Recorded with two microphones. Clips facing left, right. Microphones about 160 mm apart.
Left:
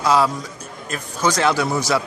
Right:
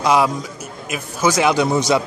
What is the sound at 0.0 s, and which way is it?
A man's voice, 15° right (ahead or behind).